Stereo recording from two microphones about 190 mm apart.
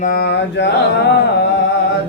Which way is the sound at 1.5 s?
65° left (ahead or behind).